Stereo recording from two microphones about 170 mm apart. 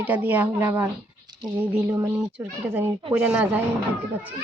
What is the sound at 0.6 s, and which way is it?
Speech, 20° right (ahead or behind).